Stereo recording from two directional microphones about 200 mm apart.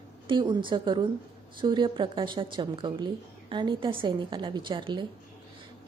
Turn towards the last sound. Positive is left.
turn(degrees=-25)  # may be behind; listen again after turning